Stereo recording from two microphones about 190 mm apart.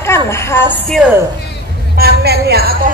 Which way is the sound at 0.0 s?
15° left (ahead or behind).